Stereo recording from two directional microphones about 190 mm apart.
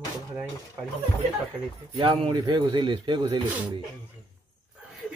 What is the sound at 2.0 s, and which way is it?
A man's voice, 25° right (ahead or behind).